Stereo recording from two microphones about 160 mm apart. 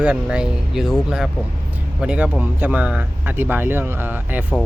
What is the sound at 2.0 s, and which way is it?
Speech, 5° right (ahead or behind).